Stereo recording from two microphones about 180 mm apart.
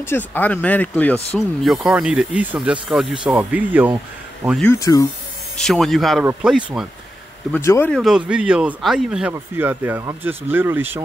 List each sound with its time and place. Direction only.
0.0 s speech: 10° left (ahead or behind); by 3.9 s 10° right (ahead or behind)
4.7 s speech: 20° left (ahead or behind)
5.6 s speech: centre (ahead or behind)
7.5 s speech: 15° left (ahead or behind)
7.9 s speech: centre (ahead or behind)